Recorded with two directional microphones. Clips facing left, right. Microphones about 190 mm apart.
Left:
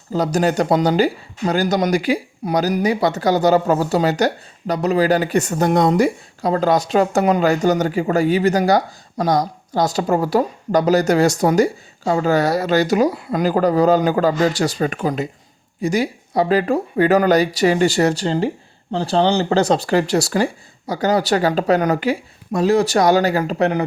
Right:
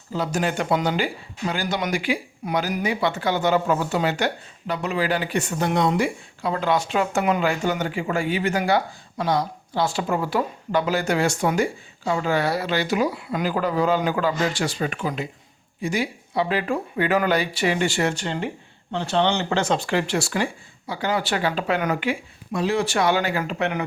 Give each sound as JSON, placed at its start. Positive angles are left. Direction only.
{"t": 0.1, "sound": "speech", "side_deg": 40}